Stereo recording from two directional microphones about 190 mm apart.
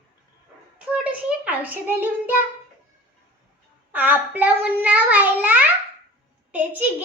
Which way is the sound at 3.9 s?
10° right (ahead or behind).